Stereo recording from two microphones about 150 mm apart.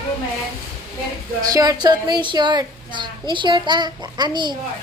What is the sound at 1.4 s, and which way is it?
A woman's voice, 25° right (ahead or behind).